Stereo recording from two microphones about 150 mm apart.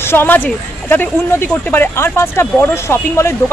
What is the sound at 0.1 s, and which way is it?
Speech, 15° left (ahead or behind).